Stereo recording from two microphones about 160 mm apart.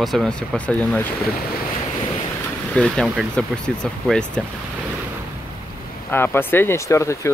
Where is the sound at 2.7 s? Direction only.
Centre (ahead or behind).